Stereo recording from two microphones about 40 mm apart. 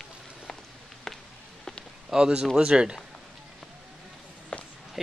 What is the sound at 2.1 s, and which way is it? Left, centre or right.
Speech, centre.